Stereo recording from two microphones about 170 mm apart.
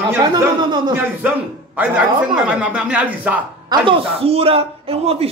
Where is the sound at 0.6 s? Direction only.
25° right (ahead or behind).